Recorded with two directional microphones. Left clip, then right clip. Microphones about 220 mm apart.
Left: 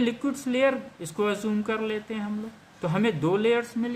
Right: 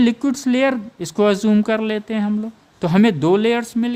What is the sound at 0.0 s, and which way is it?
A man's voice, 50° right (ahead or behind).